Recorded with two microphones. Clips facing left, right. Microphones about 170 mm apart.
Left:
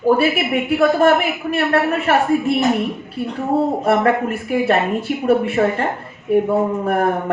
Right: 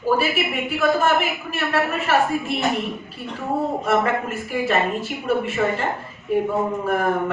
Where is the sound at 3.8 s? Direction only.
60° left (ahead or behind).